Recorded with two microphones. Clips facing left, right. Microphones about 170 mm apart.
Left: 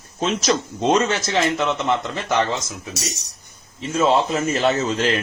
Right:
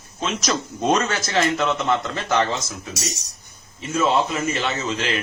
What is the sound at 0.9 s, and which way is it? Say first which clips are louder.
A man's voice: left 2 dB; 20° left (ahead or behind).